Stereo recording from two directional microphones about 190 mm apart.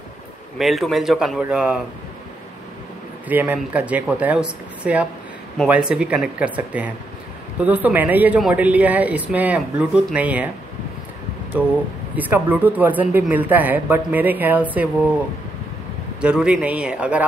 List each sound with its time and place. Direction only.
0.6 s speech: centre (ahead or behind)
3.3 s speech: 10° right (ahead or behind)
12.2 s speech: 10° right (ahead or behind)
16.2 s speech: 5° right (ahead or behind)